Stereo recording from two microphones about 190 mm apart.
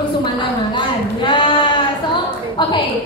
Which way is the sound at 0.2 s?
25° left (ahead or behind).